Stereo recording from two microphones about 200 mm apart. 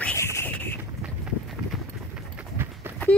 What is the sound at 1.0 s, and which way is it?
Run, centre (ahead or behind).